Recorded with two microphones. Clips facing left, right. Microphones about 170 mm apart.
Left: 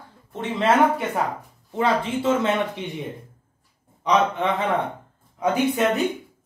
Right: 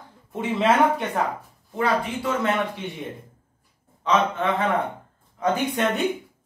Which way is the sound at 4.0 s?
15° left (ahead or behind).